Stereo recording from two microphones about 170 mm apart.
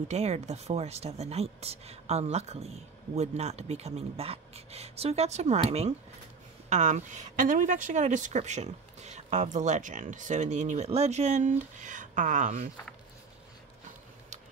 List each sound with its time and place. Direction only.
0.1 s speech: 40° right (ahead or behind)